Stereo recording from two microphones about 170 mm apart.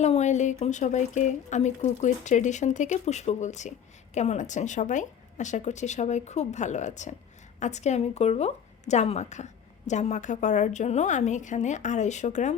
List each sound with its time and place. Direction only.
0.0 s speech: 40° left (ahead or behind)